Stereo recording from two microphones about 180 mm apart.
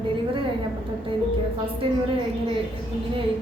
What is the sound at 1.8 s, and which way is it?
Speech, 30° right (ahead or behind).